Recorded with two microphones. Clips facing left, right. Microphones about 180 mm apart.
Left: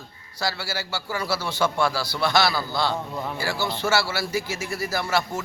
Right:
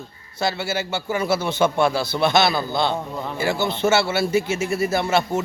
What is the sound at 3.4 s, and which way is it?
A man's voice, 20° right (ahead or behind).